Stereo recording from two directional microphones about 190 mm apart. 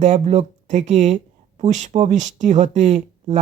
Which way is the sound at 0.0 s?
35° right (ahead or behind).